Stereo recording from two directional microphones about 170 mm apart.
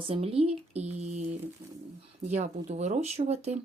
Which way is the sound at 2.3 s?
40° right (ahead or behind).